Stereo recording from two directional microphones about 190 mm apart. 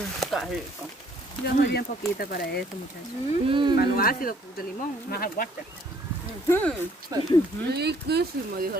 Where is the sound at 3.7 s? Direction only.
55° left (ahead or behind).